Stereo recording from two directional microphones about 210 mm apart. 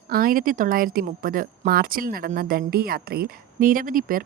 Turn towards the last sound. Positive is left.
turn(degrees=-40)  # may be behind; listen again after turning